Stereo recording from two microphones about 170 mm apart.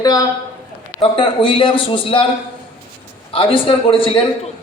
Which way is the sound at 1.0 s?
30° left (ahead or behind).